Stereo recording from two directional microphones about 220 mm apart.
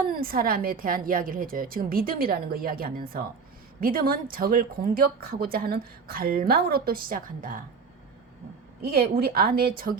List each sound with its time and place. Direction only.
0.1 s a woman's voice: 40° right (ahead or behind)
8.8 s a woman's voice: 45° right (ahead or behind)